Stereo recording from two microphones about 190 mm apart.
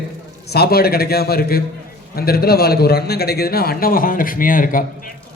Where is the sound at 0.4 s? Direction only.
55° left (ahead or behind).